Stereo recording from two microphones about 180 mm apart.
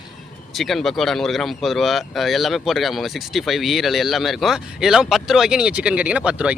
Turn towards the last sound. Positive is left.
turn(degrees=-5)  # may be behind; listen again after turning